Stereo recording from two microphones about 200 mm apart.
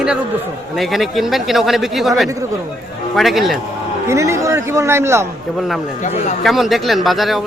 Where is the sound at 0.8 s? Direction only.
Centre (ahead or behind).